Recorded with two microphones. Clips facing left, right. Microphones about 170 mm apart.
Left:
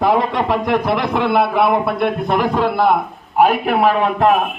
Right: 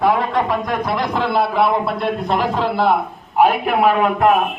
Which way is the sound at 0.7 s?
65° left (ahead or behind).